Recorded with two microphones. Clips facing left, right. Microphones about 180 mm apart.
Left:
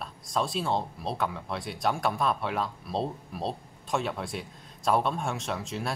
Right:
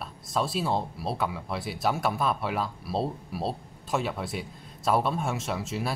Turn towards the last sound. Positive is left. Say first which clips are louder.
# right 2 dB
turn(degrees=-5)  # may be behind; listen again after turning